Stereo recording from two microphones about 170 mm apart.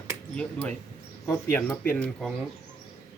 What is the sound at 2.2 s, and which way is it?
Speech, centre (ahead or behind).